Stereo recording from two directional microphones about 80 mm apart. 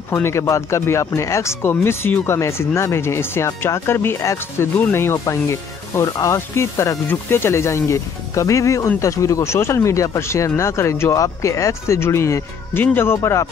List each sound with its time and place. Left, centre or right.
0.1 s speech: left
12.7 s speech: left